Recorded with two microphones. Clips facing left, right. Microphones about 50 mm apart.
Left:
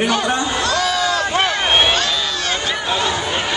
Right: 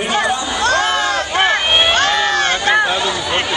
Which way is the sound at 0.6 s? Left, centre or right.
Right.